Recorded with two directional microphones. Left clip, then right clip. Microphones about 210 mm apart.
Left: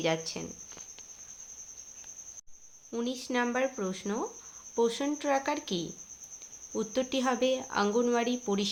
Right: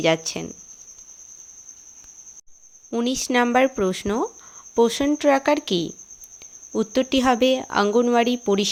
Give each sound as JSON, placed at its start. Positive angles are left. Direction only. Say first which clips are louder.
{"t": 0.0, "sound": "speech", "louder": "right 10 dB", "side_deg": -40}
{"t": 2.9, "sound": "speech", "louder": "right 11 dB", "side_deg": -45}